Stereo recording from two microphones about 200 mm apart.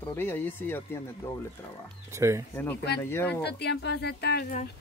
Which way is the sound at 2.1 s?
15° right (ahead or behind).